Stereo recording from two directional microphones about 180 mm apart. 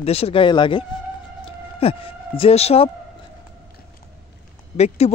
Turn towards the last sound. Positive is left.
turn(degrees=35)  # may be behind; listen again after turning